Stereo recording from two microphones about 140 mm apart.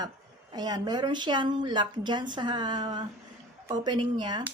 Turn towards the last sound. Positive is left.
turn(degrees=-35)  # may be behind; listen again after turning